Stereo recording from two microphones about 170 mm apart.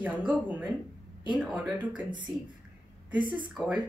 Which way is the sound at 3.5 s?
5° right (ahead or behind).